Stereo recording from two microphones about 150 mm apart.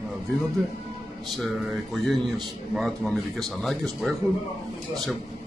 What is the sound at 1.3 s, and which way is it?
A man's voice, centre (ahead or behind).